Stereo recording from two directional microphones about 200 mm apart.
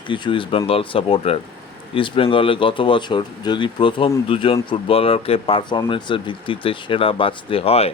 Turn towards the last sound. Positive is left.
turn(degrees=30)  # may be behind; listen again after turning